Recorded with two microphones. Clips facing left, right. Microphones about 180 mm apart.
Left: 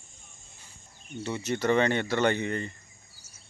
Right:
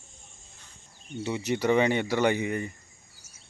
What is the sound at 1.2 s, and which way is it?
Speech, 15° right (ahead or behind).